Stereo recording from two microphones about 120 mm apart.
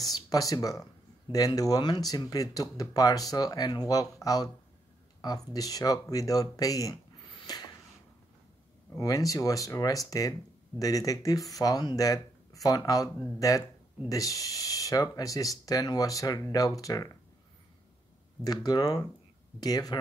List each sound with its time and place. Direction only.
0.1 s speech: 30° left (ahead or behind)
9.0 s speech: 30° left (ahead or behind)
18.4 s speech: 30° left (ahead or behind)